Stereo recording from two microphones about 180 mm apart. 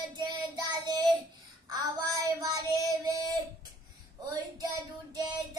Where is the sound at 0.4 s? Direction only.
25° right (ahead or behind).